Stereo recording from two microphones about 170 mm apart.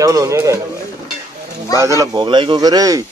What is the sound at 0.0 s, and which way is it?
Speech, 20° right (ahead or behind).